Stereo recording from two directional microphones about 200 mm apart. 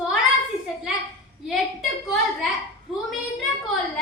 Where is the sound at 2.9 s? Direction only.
Centre (ahead or behind).